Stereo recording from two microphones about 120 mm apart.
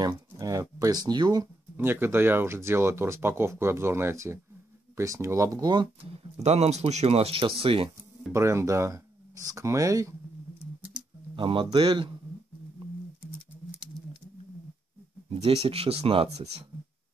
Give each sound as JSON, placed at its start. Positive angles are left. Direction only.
{"t": 0.0, "sound": "speech", "side_deg": -30}
{"t": 1.8, "sound": "speech", "side_deg": -20}
{"t": 6.0, "sound": "speech", "side_deg": -60}
{"t": 8.3, "sound": "speech", "side_deg": -25}
{"t": 11.3, "sound": "a man's voice", "side_deg": -45}
{"t": 15.4, "sound": "speech", "side_deg": -55}